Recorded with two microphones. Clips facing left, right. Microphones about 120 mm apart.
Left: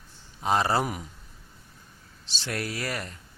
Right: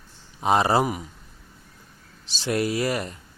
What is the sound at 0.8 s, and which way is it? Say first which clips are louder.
Speech: right 5 dB; 5° right (ahead or behind).